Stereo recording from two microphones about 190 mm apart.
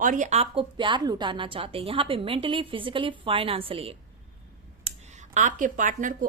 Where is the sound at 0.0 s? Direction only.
40° right (ahead or behind).